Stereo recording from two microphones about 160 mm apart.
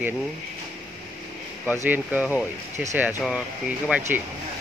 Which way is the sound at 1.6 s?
10° right (ahead or behind).